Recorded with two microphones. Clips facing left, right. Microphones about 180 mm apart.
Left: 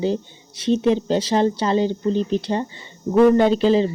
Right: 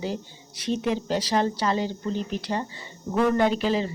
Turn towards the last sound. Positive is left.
turn(degrees=30)  # may be behind; listen again after turning